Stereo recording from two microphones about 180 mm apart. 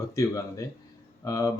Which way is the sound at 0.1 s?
20° left (ahead or behind).